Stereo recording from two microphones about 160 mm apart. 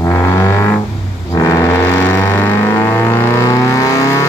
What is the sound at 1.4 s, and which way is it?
Vehicle, 20° left (ahead or behind).